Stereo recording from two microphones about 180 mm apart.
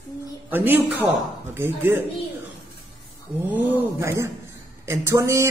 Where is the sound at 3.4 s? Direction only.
10° right (ahead or behind).